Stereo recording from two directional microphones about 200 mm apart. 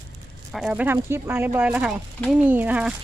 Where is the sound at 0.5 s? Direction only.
5° right (ahead or behind).